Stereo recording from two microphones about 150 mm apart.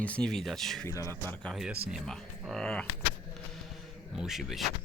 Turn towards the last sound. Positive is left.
turn(degrees=0)  # may be behind; listen again after turning